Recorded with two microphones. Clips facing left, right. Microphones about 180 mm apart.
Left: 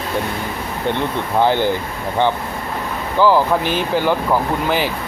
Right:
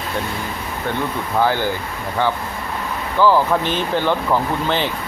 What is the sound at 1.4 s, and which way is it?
Speech, 20° left (ahead or behind).